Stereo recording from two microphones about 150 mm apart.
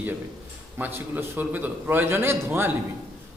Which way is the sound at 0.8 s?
10° right (ahead or behind).